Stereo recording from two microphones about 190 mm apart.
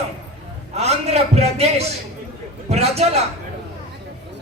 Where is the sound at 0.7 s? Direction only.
35° right (ahead or behind).